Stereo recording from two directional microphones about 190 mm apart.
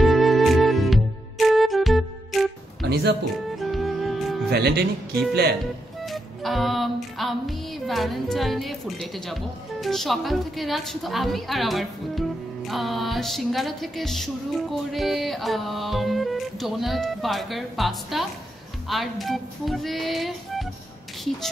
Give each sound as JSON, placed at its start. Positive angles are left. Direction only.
{"t": 0.0, "sound": "music", "side_deg": 0}
{"t": 2.8, "sound": "music", "side_deg": -60}
{"t": 3.5, "sound": "music", "side_deg": 0}
{"t": 4.5, "sound": "speech", "side_deg": -60}
{"t": 6.0, "sound": "music", "side_deg": 0}
{"t": 9.0, "sound": "a woman's voice", "side_deg": 0}